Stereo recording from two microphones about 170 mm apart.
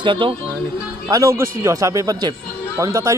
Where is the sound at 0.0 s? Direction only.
30° right (ahead or behind).